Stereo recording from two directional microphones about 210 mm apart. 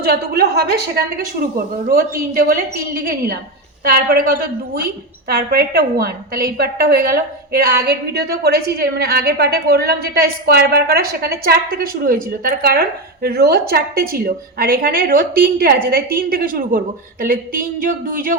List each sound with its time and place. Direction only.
0.0 s a woman's voice: 50° right (ahead or behind)